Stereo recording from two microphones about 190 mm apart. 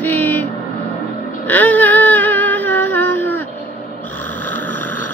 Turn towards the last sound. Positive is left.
turn(degrees=10)  # may be behind; listen again after turning